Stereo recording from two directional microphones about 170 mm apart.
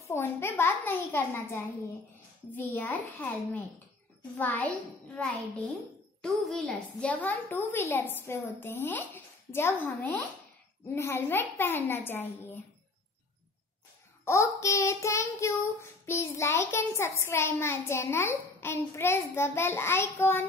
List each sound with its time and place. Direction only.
0.1 s child singing: 15° left (ahead or behind)
14.2 s child singing: 15° left (ahead or behind)